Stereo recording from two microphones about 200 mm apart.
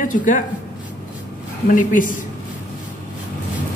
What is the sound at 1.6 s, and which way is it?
Speech, 40° left (ahead or behind).